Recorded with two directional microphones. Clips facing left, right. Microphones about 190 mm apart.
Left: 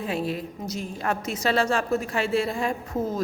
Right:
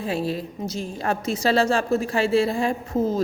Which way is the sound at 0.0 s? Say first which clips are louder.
Right 2 dB; 30° right (ahead or behind).